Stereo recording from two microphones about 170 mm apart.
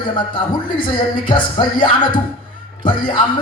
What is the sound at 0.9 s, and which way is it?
Speech, 30° left (ahead or behind).